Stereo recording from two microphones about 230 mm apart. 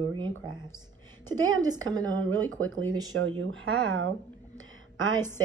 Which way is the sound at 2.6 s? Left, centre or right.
Right.